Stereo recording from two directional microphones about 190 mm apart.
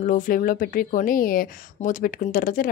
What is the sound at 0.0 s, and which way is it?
Speech, 45° left (ahead or behind).